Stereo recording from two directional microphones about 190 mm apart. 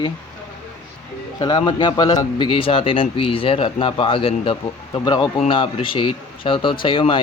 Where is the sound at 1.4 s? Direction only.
25° left (ahead or behind).